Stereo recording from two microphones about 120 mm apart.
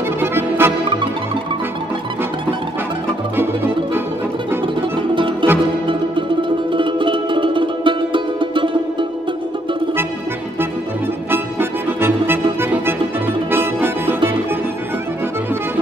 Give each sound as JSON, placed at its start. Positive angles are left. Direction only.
{"t": 0.2, "sound": "music", "side_deg": -20}
{"t": 5.1, "sound": "music", "side_deg": -45}
{"t": 6.7, "sound": "music", "side_deg": -45}
{"t": 12.5, "sound": "music", "side_deg": -20}